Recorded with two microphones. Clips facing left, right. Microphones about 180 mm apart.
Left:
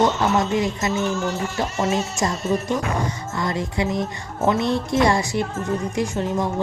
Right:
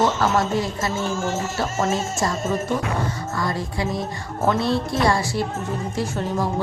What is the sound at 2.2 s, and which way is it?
A woman's voice, 20° left (ahead or behind).